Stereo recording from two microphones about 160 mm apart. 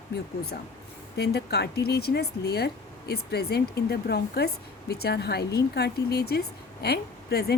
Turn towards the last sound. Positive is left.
turn(degrees=85)